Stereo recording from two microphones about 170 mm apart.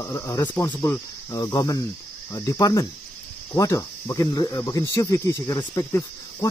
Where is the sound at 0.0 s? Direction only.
15° left (ahead or behind).